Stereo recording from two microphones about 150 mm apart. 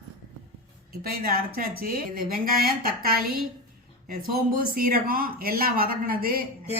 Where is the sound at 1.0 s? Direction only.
80° right.